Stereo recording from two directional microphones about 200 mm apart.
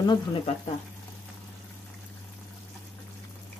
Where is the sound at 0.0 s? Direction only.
20° left (ahead or behind).